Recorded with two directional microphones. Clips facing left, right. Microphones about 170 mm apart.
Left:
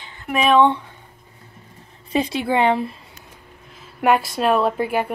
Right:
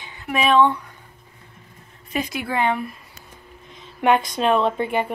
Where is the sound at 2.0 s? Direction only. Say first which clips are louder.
Left 5 dB; 30° left (ahead or behind).